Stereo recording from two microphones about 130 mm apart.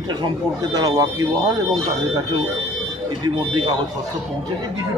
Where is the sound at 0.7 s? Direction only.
25° right (ahead or behind).